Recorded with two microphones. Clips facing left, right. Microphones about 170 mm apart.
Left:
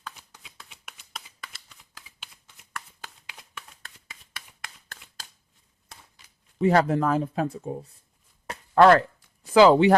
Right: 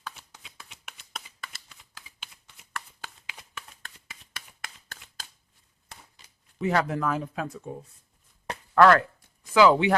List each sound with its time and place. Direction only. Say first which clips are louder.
0.0 s shuffling cards: right 1 dB; 5° right (ahead or behind)
6.6 s speech: left 5 dB; 35° left (ahead or behind)
8.7 s a sound: left 2 dB; 25° left (ahead or behind)